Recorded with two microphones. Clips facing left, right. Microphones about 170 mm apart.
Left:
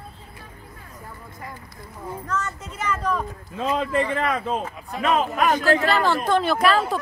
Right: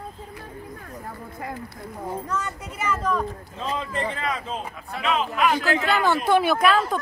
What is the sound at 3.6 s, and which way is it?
A man's voice, 60° left (ahead or behind).